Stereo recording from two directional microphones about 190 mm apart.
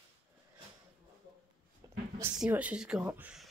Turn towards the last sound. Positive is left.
turn(degrees=-5)  # may be behind; listen again after turning